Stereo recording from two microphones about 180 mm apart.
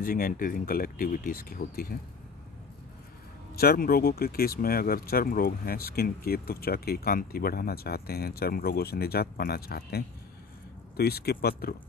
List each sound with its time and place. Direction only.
0.0 s speech: 50° left (ahead or behind)
3.5 s speech: 55° left (ahead or behind)